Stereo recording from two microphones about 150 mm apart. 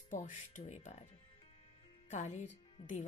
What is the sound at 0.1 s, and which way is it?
A woman's voice, 55° left (ahead or behind).